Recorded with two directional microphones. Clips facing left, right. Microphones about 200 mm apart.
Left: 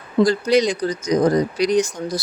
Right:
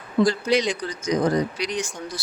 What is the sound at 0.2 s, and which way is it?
Speech, 40° left (ahead or behind).